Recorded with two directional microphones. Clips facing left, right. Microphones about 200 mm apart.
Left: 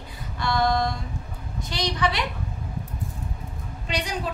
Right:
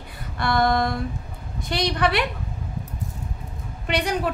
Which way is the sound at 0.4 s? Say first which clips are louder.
Right 2 dB; 55° right (ahead or behind).